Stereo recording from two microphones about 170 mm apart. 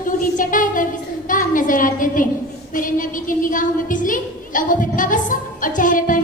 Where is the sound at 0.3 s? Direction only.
50° left (ahead or behind).